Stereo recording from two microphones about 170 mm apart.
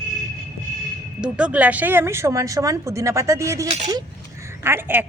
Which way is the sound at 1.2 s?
5° right (ahead or behind).